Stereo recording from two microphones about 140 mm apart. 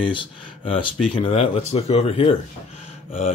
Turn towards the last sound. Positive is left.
turn(degrees=45)  # may be behind; listen again after turning